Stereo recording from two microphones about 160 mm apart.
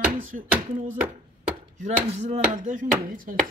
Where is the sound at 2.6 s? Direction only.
60° right (ahead or behind).